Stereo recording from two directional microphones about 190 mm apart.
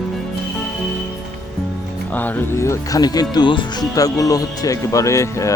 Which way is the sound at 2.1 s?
10° left (ahead or behind).